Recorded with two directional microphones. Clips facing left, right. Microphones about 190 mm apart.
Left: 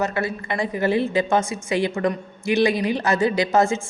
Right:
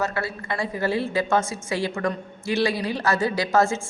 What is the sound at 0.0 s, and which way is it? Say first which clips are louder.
A woman's voice: left 3 dB; 20° left (ahead or behind).